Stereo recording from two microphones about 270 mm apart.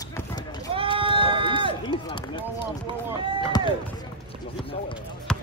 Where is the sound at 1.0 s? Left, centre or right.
Centre.